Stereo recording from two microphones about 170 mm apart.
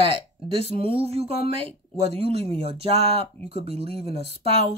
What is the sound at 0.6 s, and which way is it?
Speech, 35° right (ahead or behind).